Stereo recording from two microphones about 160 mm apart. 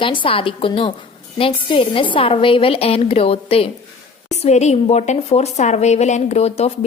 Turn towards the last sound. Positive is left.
turn(degrees=40)  # may be behind; listen again after turning